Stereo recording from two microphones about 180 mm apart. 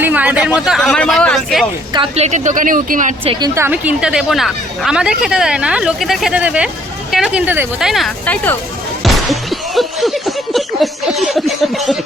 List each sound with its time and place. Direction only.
0.0 s speech: 10° right (ahead or behind)
1.9 s a woman's voice: 30° right (ahead or behind); by 3.2 s 45° right (ahead or behind)
3.5 s speech: 10° right (ahead or behind)